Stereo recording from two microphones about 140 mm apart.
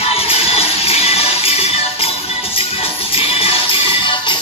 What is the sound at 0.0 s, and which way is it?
Music, 45° left (ahead or behind).